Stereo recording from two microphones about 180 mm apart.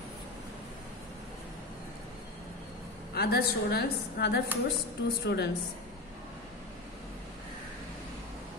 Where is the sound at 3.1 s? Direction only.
60° left (ahead or behind).